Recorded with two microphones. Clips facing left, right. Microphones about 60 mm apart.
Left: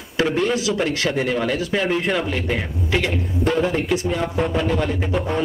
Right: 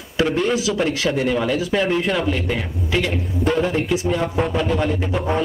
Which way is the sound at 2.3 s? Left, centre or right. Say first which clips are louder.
Even; centre.